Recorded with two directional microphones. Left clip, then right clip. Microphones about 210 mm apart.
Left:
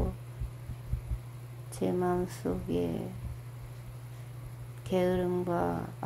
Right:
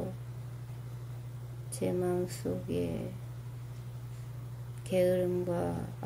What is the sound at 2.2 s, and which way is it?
Speech, 15° left (ahead or behind).